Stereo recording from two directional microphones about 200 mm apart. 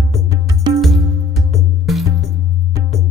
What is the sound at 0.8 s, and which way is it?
Music, centre (ahead or behind).